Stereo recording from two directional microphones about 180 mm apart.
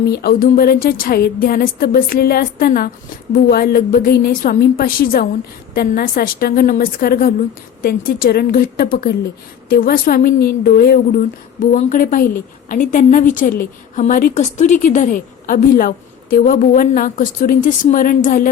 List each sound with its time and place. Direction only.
0.0 s a woman's voice: 60° left (ahead or behind)